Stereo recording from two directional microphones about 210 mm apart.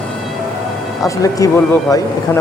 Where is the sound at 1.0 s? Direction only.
15° left (ahead or behind).